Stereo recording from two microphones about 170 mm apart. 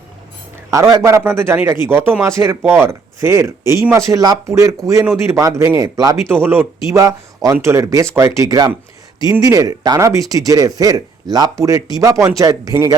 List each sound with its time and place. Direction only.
0.7 s speech: 20° right (ahead or behind)